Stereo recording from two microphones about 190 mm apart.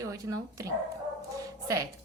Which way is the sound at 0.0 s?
15° right (ahead or behind).